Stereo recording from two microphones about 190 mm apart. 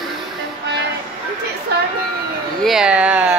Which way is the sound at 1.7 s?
60° right (ahead or behind).